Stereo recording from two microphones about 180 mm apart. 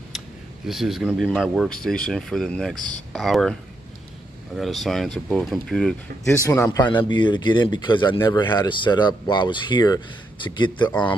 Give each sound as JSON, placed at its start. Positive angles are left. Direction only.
{"t": 0.7, "sound": "speech", "side_deg": 0}
{"t": 4.6, "sound": "speech", "side_deg": 0}
{"t": 6.2, "sound": "speech", "side_deg": 15}
{"t": 10.9, "sound": "speech", "side_deg": 10}